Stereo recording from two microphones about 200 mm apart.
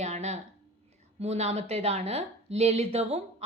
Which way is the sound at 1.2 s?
35° right (ahead or behind).